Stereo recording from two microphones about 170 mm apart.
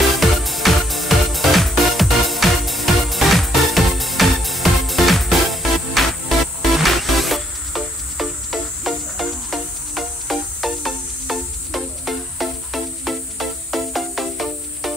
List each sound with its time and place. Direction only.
0.1 s music: centre (ahead or behind)